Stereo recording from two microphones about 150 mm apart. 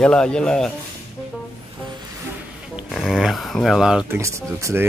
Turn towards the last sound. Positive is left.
turn(degrees=-15)  # may be behind; listen again after turning